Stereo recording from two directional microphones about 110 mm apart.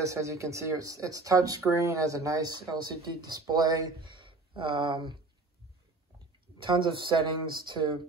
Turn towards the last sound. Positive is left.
turn(degrees=-45)  # may be behind; listen again after turning